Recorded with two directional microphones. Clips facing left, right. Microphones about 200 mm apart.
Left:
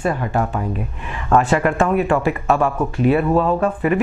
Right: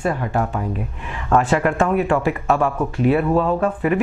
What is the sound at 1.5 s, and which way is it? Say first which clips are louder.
Speech: left 1 dB; 20° left (ahead or behind).